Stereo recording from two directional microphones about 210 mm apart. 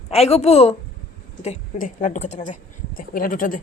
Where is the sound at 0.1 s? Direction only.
30° left (ahead or behind).